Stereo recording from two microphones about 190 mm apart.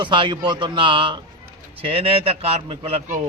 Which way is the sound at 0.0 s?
25° right (ahead or behind).